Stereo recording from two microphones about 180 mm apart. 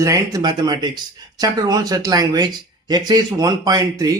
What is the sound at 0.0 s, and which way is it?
Speech, 20° right (ahead or behind).